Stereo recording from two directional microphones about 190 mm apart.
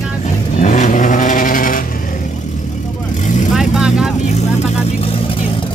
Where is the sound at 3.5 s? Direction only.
5° right (ahead or behind).